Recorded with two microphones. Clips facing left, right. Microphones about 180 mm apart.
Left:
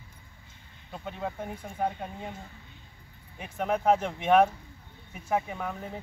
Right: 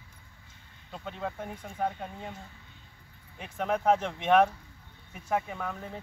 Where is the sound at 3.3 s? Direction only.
5° left (ahead or behind).